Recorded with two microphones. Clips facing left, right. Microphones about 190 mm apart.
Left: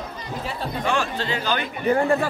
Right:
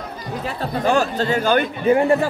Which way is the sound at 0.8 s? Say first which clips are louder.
Right 7 dB; 40° right (ahead or behind).